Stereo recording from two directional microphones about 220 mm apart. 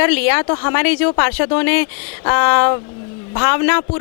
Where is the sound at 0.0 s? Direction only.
10° left (ahead or behind).